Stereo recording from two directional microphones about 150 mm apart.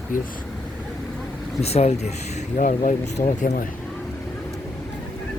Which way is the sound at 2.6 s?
60° left (ahead or behind).